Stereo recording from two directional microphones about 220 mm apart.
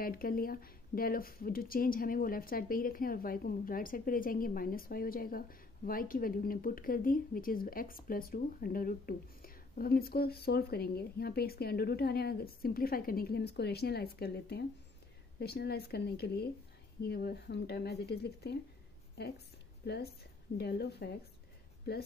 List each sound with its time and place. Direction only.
0.0 s a woman's voice: 40° left (ahead or behind)